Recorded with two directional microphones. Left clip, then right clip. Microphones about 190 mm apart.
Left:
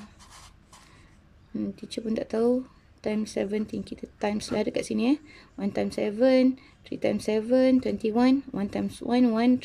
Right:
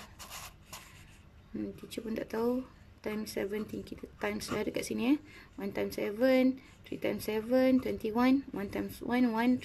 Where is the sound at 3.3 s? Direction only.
20° left (ahead or behind).